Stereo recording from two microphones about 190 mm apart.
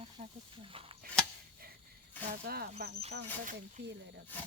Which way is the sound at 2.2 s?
55° right (ahead or behind).